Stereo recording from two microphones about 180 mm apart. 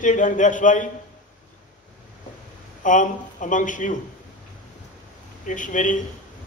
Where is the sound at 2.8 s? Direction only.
45° left (ahead or behind).